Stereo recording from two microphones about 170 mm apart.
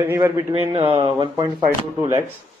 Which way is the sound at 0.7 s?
30° right (ahead or behind).